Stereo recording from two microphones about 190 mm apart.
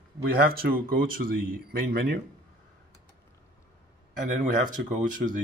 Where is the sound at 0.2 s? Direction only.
50° right (ahead or behind).